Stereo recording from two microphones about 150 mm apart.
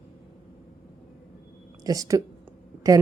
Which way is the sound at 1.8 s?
25° right (ahead or behind).